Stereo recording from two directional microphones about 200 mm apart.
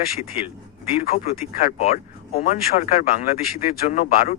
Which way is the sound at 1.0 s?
40° left (ahead or behind).